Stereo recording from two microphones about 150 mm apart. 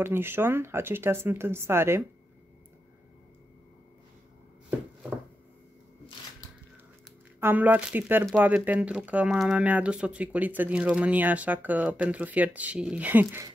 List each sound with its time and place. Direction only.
0.0 s speech: 15° right (ahead or behind)
7.3 s speech: 15° right (ahead or behind)